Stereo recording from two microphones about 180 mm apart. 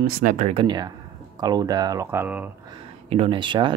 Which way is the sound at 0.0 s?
45° right (ahead or behind).